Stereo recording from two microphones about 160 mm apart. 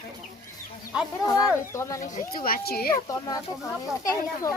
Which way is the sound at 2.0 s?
65° left (ahead or behind).